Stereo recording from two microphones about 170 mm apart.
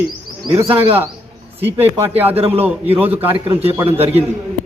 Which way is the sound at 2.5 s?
10° right (ahead or behind).